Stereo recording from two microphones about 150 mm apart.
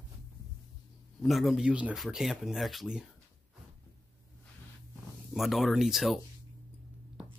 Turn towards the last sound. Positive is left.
turn(degrees=0)  # may be behind; listen again after turning